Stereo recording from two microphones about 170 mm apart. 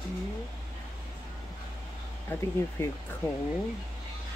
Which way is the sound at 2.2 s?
15° left (ahead or behind).